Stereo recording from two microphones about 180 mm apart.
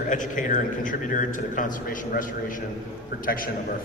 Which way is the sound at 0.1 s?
45° left (ahead or behind).